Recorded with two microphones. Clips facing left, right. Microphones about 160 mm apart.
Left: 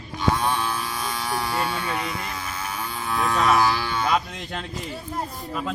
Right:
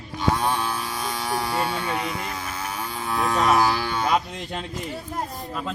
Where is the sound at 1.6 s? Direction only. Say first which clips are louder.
Right 1 dB; 35° right (ahead or behind).